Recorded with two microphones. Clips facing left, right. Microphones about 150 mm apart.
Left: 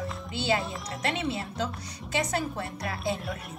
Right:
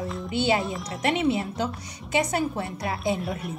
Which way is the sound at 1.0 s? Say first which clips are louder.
Right 7 dB; 15° right (ahead or behind).